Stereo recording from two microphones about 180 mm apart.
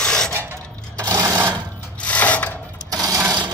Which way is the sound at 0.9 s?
20° right (ahead or behind).